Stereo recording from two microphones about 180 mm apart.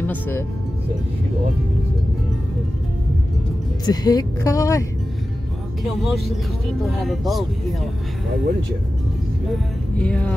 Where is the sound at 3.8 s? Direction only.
20° left (ahead or behind).